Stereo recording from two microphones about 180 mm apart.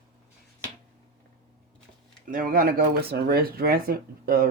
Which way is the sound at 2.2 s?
50° right (ahead or behind).